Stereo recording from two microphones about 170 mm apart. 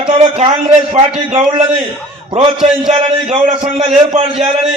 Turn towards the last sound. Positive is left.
turn(degrees=-35)  # may be behind; listen again after turning